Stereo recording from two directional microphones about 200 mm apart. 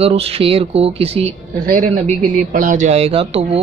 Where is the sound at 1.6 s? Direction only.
45° right (ahead or behind).